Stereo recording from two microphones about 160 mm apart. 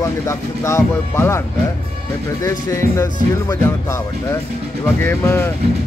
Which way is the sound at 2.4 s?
20° left (ahead or behind).